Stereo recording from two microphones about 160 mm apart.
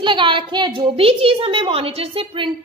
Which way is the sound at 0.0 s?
30° right (ahead or behind).